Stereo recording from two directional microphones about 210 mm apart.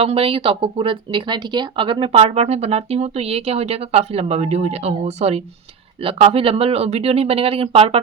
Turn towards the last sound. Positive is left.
turn(degrees=-25)  # may be behind; listen again after turning